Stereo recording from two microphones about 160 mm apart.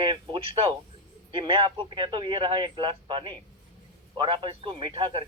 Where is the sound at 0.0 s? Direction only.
30° right (ahead or behind).